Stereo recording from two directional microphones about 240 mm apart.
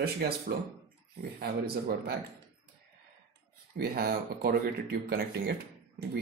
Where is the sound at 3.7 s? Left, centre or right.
Right.